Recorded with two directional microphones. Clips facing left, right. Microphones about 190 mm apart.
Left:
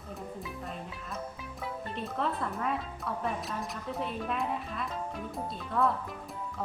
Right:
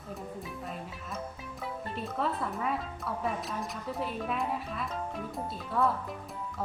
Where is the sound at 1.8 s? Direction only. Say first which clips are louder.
Right 1 dB; centre (ahead or behind).